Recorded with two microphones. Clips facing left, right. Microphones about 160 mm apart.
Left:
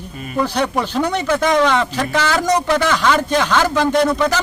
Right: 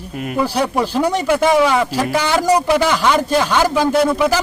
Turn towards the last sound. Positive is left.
turn(degrees=-10)  # may be behind; listen again after turning